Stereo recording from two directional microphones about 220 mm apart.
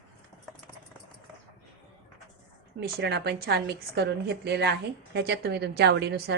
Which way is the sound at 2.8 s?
50° right (ahead or behind).